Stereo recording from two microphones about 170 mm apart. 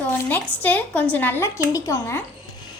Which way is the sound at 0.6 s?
10° left (ahead or behind).